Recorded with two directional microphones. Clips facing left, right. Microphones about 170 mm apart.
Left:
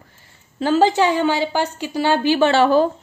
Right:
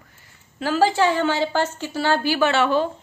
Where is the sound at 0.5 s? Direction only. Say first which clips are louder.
Left 3 dB; 25° left (ahead or behind).